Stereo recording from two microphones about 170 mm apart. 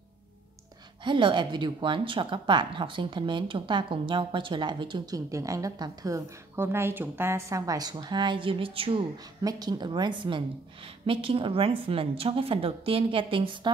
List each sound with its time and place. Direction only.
1.0 s speech: 30° right (ahead or behind)